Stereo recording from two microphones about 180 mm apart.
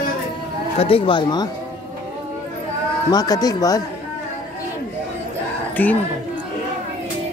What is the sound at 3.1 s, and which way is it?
Speech, 20° left (ahead or behind).